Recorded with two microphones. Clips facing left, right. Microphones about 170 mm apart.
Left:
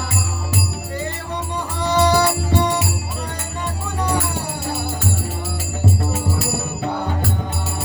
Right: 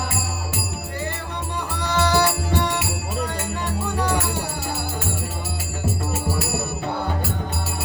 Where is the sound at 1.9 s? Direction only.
20° left (ahead or behind).